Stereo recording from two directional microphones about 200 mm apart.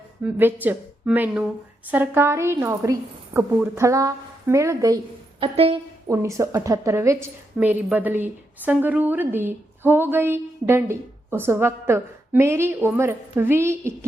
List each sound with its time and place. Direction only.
0.2 s a woman's voice: 10° right (ahead or behind)
5.4 s a woman's voice: 30° right (ahead or behind)
6.1 s a woman's voice: 15° right (ahead or behind)